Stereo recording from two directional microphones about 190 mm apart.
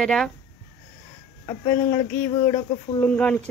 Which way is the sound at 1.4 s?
15° left (ahead or behind).